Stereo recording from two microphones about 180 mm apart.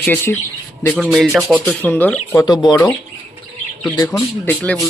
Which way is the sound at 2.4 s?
25° left (ahead or behind).